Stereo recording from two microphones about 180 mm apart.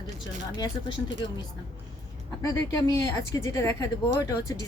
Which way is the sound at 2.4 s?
20° left (ahead or behind).